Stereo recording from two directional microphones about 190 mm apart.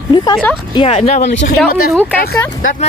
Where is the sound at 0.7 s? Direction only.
30° left (ahead or behind).